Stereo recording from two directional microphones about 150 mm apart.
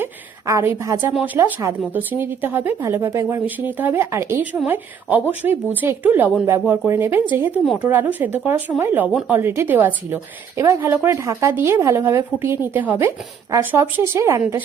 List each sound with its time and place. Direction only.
0.0 s a woman's voice: 15° right (ahead or behind)